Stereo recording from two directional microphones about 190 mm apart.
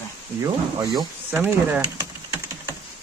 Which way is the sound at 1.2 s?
10° right (ahead or behind).